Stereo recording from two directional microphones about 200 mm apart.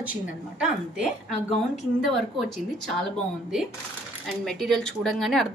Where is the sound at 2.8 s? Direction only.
Centre (ahead or behind).